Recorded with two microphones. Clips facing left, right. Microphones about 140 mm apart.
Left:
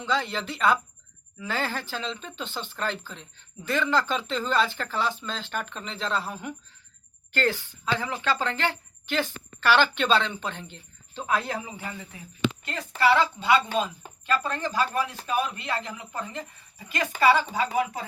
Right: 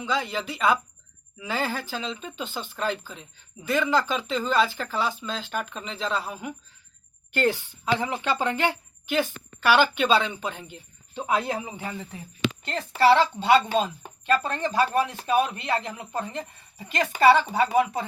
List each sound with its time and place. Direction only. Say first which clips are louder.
0.0 s a woman's voice: even; 5° right (ahead or behind)
7.3 s a woman's voice: right 2 dB; 15° right (ahead or behind)
13.0 s speech: right 3 dB; 30° right (ahead or behind)